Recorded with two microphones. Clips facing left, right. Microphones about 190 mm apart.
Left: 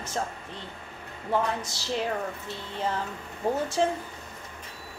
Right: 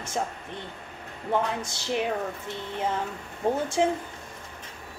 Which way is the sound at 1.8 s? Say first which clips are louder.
Right 2 dB; 20° right (ahead or behind).